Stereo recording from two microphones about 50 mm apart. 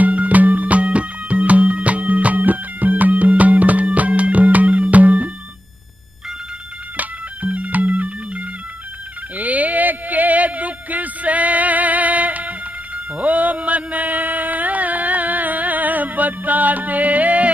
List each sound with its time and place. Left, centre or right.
0.0 s music: right
7.0 s music: right